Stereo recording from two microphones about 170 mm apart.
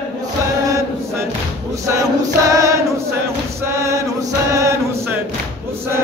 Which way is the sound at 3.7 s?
15° right (ahead or behind).